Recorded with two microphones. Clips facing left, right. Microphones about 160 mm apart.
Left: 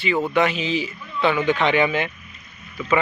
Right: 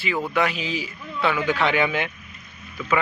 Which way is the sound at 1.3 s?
20° left (ahead or behind).